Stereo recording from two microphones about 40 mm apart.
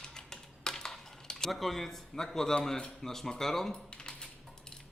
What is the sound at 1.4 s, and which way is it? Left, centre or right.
Speech, centre.